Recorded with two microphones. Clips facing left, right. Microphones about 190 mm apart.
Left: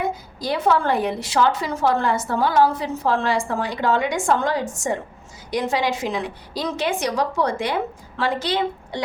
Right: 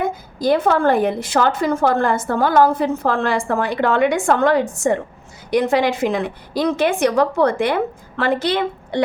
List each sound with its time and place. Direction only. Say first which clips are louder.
0.0 s a woman's voice: right 5 dB; 50° right (ahead or behind)